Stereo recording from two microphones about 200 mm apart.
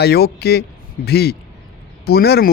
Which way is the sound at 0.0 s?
55° left (ahead or behind).